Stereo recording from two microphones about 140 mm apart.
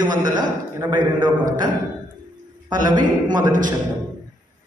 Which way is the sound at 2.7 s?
30° right (ahead or behind).